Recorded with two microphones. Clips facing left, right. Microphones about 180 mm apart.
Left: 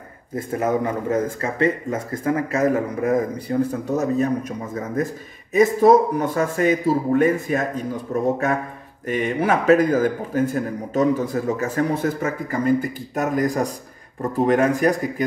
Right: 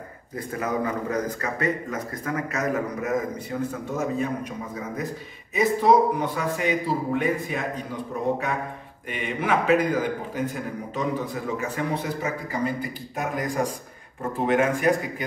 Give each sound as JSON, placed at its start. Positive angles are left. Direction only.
{"t": 0.4, "sound": "speech", "side_deg": 25}
{"t": 5.5, "sound": "a man's voice", "side_deg": 45}
{"t": 9.0, "sound": "a man's voice", "side_deg": 40}